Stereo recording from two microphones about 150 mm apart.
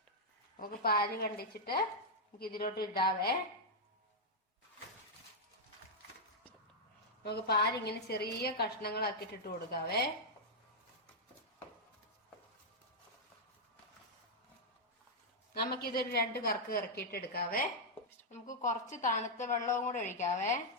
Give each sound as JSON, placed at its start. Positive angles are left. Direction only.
{"t": 0.5, "sound": "a woman's voice", "side_deg": 75}
{"t": 7.3, "sound": "a woman's voice", "side_deg": 90}
{"t": 15.5, "sound": "a woman's voice", "side_deg": 90}
{"t": 18.3, "sound": "a woman's voice", "side_deg": 55}